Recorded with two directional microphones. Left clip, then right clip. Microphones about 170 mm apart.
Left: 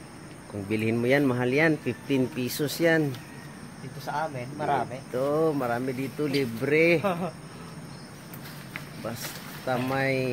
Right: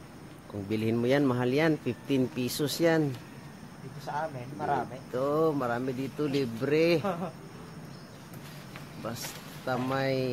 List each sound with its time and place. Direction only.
0.7 s speech: 10° right (ahead or behind)
4.6 s speech: 40° left (ahead or behind)
5.1 s speech: 10° right (ahead or behind)
9.7 s speech: 10° right (ahead or behind)